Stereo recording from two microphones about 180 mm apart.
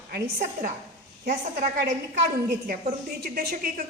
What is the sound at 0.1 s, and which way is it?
Speech, 55° right (ahead or behind).